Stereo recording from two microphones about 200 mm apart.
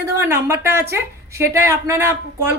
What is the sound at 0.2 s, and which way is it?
A woman's voice, 10° right (ahead or behind).